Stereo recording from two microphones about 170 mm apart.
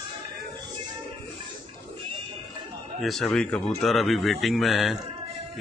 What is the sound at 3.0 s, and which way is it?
A man's voice, centre (ahead or behind).